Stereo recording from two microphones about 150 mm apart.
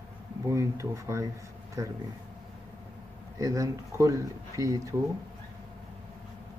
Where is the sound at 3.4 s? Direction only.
20° right (ahead or behind).